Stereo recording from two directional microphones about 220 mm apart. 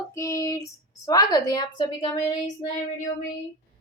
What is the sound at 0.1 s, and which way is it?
Speech, 15° left (ahead or behind).